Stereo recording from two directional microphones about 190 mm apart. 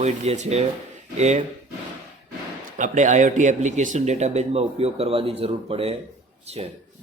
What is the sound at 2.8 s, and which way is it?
A man's voice, 40° right (ahead or behind).